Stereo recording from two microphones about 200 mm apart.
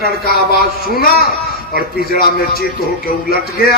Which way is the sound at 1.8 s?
50° left (ahead or behind).